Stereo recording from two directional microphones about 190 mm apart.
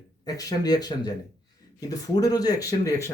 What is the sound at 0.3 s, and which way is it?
Speech, 20° left (ahead or behind).